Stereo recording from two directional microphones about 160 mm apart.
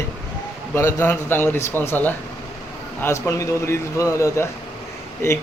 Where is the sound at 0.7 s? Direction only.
15° left (ahead or behind).